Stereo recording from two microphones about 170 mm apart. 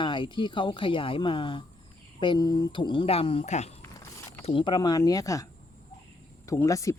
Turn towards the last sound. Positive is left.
turn(degrees=20)  # may be behind; listen again after turning